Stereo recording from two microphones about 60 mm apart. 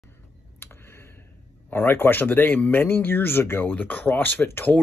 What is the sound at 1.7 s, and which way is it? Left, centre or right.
Speech, left.